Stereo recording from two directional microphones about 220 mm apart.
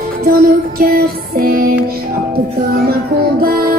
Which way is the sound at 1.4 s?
40° right (ahead or behind).